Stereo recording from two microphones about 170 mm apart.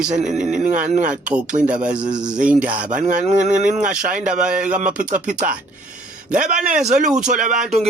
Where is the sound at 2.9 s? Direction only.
50° right (ahead or behind).